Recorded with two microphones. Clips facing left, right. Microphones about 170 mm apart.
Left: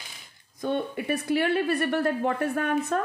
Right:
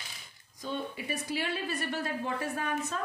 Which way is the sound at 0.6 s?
60° left (ahead or behind).